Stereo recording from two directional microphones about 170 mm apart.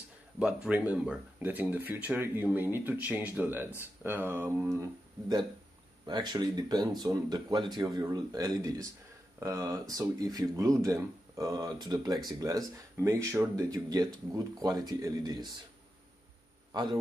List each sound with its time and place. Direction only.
0.4 s speech: 10° right (ahead or behind)
6.0 s speech: 25° right (ahead or behind)
16.7 s speech: 25° right (ahead or behind)